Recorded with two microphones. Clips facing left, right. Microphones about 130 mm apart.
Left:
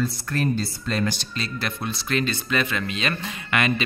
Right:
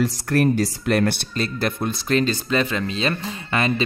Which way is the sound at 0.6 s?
65° right (ahead or behind).